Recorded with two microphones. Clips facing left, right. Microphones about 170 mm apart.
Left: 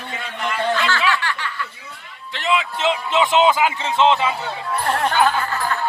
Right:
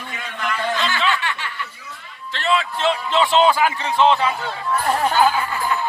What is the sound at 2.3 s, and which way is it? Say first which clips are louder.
A man's voice: even; 15° left (ahead or behind).